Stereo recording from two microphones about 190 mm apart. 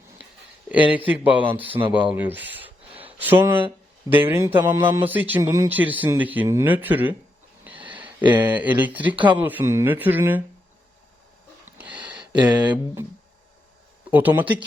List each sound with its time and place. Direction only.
0.7 s speech: 10° right (ahead or behind)
7.6 s a sound: 10° right (ahead or behind)
8.3 s speech: 10° right (ahead or behind)
9.1 s speech: 25° right (ahead or behind)
9.4 s speech: 10° right (ahead or behind)
11.6 s a sound: 5° right (ahead or behind)
14.1 s speech: 10° right (ahead or behind)